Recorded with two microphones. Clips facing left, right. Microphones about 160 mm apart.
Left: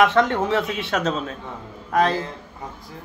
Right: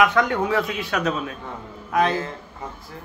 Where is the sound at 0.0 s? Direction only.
30° left (ahead or behind).